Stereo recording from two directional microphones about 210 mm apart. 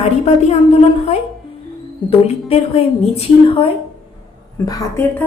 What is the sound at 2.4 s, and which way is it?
A woman's voice, 30° left (ahead or behind).